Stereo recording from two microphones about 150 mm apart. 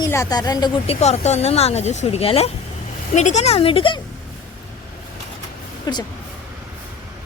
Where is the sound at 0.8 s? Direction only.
45° left (ahead or behind).